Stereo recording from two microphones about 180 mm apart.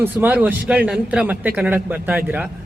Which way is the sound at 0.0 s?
10° right (ahead or behind).